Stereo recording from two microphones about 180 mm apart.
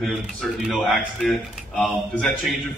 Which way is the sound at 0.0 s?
Centre (ahead or behind).